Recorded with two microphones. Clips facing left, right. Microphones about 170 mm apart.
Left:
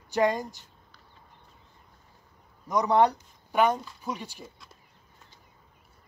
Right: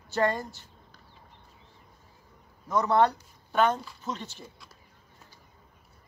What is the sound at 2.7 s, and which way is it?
Speech, 15° left (ahead or behind).